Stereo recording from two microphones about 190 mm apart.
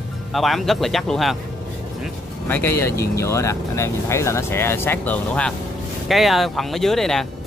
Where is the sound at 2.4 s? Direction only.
10° left (ahead or behind).